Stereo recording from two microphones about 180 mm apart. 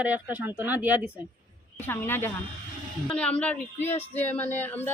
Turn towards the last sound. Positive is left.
turn(degrees=10)  # may be behind; listen again after turning